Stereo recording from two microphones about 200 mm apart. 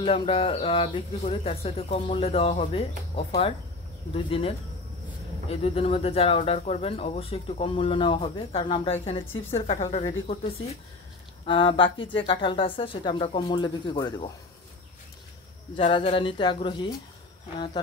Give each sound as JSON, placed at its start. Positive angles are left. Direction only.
{"t": 0.0, "sound": "speech", "side_deg": 25}
{"t": 11.4, "sound": "speech", "side_deg": 25}
{"t": 15.7, "sound": "speech", "side_deg": 25}